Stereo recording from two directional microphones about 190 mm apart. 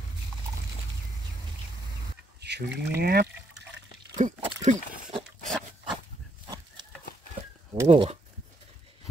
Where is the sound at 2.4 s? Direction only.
60° right (ahead or behind).